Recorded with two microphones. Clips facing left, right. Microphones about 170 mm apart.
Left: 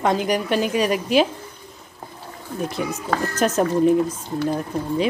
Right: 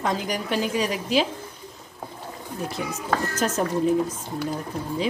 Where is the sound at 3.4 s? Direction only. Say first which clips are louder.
Left 8 dB; 65° left (ahead or behind).